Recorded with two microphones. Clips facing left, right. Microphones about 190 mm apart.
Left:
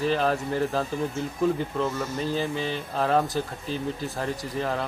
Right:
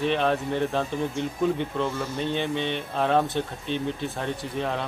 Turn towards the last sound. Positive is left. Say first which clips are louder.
# even
turn(degrees=0)  # may be behind; listen again after turning